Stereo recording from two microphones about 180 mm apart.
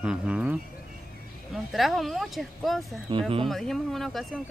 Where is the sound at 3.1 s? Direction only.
25° right (ahead or behind).